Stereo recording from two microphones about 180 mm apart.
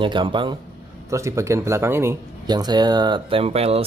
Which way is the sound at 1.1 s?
15° right (ahead or behind).